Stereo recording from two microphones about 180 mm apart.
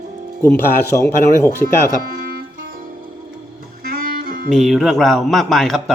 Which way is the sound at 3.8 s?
55° right (ahead or behind).